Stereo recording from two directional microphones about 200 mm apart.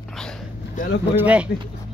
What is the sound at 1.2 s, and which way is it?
Speech, 5° right (ahead or behind).